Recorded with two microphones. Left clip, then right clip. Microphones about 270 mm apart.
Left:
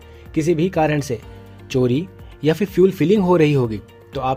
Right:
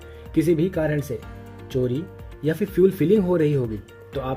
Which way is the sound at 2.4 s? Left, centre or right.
Centre.